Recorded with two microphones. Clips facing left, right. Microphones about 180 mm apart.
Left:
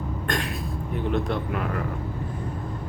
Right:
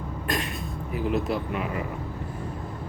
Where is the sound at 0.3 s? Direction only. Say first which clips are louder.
Even; 5° right (ahead or behind).